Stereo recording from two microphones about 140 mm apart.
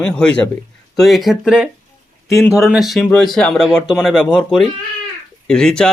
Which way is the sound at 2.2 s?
20° left (ahead or behind).